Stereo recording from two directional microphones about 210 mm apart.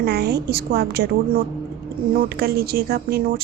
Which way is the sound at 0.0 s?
50° right (ahead or behind).